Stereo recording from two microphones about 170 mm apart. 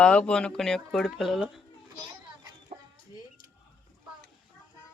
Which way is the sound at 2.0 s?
20° right (ahead or behind).